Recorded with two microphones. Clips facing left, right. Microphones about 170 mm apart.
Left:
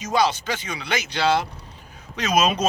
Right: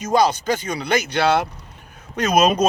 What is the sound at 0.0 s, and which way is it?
Speech, 45° right (ahead or behind).